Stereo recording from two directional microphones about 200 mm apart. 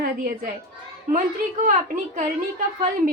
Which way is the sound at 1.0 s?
40° right (ahead or behind).